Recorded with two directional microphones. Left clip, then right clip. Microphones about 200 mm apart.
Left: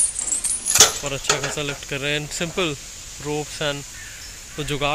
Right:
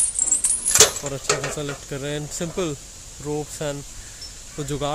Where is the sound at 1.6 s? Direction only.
10° right (ahead or behind).